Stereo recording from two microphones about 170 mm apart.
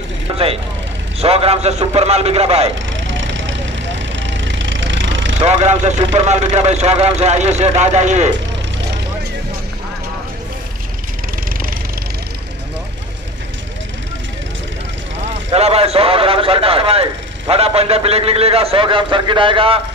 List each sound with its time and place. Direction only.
0.3 s a man's voice: 30° right (ahead or behind)
3.0 s a sound: 90° right
5.5 s a man's voice: 40° right (ahead or behind)
15.5 s a man's voice: 35° right (ahead or behind)